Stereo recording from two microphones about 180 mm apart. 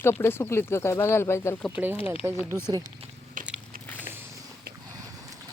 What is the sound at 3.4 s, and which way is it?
Biting, 45° right (ahead or behind).